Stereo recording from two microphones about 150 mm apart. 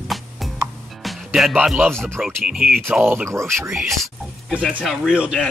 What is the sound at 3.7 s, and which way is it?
Speech, centre (ahead or behind).